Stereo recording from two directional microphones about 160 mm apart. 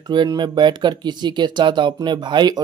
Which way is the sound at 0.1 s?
30° right (ahead or behind).